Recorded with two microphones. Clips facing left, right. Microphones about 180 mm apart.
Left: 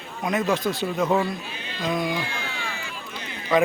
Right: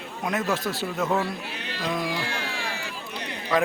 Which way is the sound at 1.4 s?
75° right (ahead or behind).